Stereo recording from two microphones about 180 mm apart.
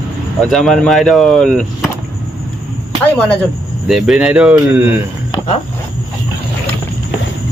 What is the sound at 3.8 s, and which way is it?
Speech, centre (ahead or behind).